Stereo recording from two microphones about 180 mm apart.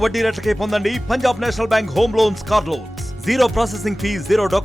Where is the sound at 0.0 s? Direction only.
Centre (ahead or behind).